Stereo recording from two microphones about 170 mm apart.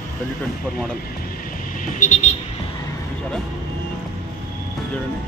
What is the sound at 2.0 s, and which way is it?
Vehicle, 50° left (ahead or behind).